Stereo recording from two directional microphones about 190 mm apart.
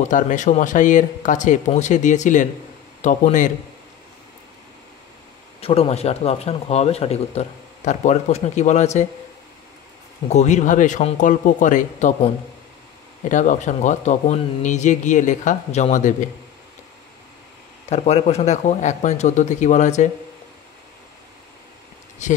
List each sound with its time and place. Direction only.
0.1 s speech: 40° left (ahead or behind)
5.6 s speech: 30° left (ahead or behind)
10.3 s speech: 40° left (ahead or behind)
17.8 s speech: 35° left (ahead or behind)
22.2 s speech: 40° left (ahead or behind)